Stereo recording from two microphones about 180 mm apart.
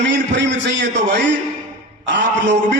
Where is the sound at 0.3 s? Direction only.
75° right (ahead or behind).